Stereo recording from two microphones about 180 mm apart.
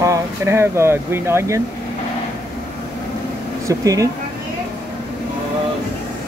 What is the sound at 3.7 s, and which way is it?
Speech, 20° right (ahead or behind).